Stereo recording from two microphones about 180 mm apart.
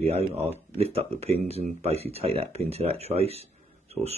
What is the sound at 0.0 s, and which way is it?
Speech, 35° right (ahead or behind).